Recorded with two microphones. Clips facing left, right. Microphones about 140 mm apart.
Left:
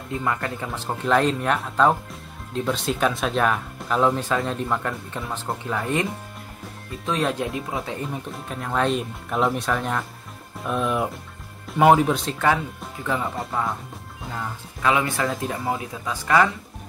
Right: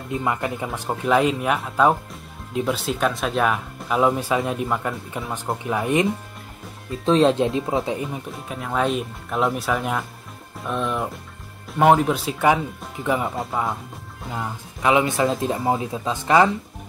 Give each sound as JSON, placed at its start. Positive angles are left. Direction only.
{"t": 0.1, "sound": "speech", "side_deg": -20}
{"t": 0.7, "sound": "speech", "side_deg": -5}
{"t": 5.7, "sound": "speech", "side_deg": -15}
{"t": 7.1, "sound": "speech", "side_deg": -25}
{"t": 8.1, "sound": "speech", "side_deg": -5}
{"t": 14.3, "sound": "speech", "side_deg": -20}